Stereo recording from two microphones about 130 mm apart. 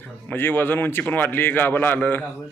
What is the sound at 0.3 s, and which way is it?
Speech, 15° left (ahead or behind).